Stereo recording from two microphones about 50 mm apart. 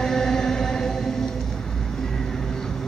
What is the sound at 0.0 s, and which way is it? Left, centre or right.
Music, centre.